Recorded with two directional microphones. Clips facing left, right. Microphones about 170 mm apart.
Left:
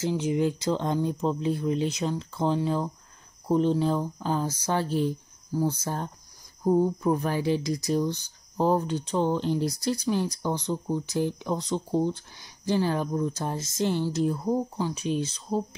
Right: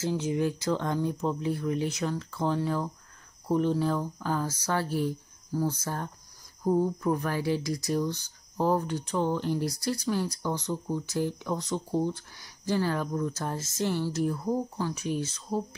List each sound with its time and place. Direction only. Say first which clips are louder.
0.0 s speech: left 2 dB; 15° left (ahead or behind)